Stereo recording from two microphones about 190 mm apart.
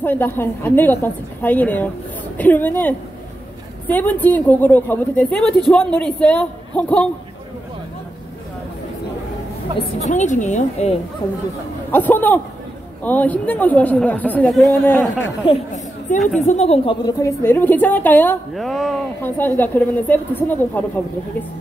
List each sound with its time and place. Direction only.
0.0 s a woman's voice: 10° left (ahead or behind)
9.8 s a woman's voice: 35° left (ahead or behind)
11.9 s a woman's voice: 10° left (ahead or behind)
15.4 s a woman's voice: 35° left (ahead or behind)
17.2 s a woman's voice: 10° left (ahead or behind)